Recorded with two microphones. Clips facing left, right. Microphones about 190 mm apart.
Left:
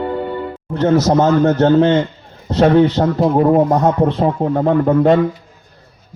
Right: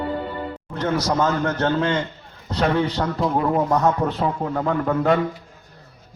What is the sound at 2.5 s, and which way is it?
A man's voice, 30° left (ahead or behind).